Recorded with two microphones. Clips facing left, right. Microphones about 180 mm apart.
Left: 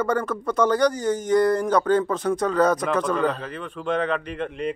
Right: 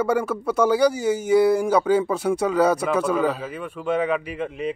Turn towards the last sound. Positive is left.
turn(degrees=-5)  # may be behind; listen again after turning